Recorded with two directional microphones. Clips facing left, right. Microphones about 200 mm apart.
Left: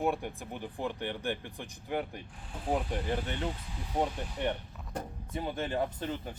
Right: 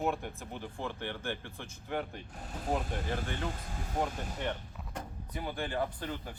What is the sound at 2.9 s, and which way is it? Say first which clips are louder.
Speech: left 3 dB; 45° right (ahead or behind).